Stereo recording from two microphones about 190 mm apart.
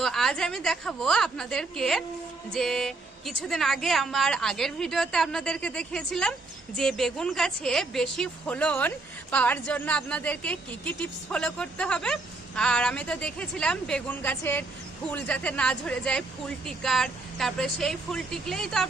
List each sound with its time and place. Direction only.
0.0 s speech: centre (ahead or behind)